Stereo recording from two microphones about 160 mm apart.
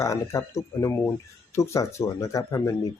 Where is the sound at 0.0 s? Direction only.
20° left (ahead or behind).